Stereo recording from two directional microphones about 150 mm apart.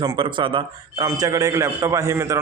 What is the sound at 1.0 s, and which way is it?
Speech, 20° right (ahead or behind).